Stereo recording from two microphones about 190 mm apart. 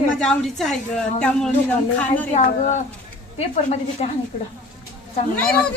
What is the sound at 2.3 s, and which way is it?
Speech, 35° left (ahead or behind).